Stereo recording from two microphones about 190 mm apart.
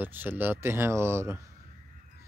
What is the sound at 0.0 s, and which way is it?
Speech, 10° right (ahead or behind).